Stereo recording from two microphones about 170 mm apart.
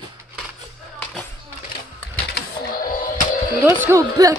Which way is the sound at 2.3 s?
55° left (ahead or behind).